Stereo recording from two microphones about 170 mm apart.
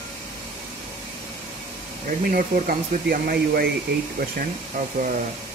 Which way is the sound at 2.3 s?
55° right (ahead or behind).